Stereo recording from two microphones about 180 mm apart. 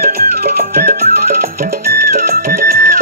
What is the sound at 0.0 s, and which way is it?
Music, 60° right (ahead or behind).